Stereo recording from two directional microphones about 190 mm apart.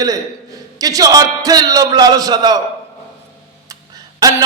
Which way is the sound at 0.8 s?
20° right (ahead or behind).